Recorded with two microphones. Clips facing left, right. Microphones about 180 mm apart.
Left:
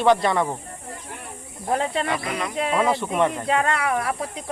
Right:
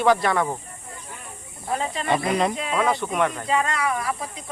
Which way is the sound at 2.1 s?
30° right (ahead or behind).